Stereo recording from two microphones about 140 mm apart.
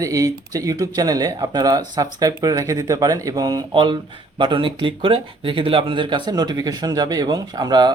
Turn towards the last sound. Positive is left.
turn(degrees=-30)  # may be behind; listen again after turning